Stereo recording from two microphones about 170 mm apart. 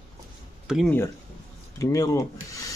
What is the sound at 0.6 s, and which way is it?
Speech, 5° right (ahead or behind).